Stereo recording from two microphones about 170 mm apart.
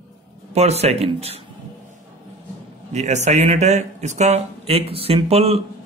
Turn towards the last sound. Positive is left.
turn(degrees=-35)  # may be behind; listen again after turning